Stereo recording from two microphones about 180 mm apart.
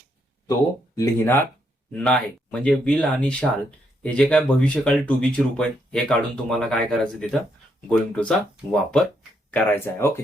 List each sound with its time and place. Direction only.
0.9 s speech: 15° left (ahead or behind)